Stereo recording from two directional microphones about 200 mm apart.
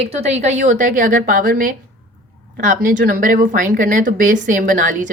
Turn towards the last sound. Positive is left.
turn(degrees=-40)  # may be behind; listen again after turning